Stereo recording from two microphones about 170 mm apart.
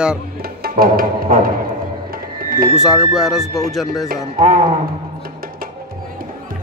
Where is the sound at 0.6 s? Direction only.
60° right (ahead or behind).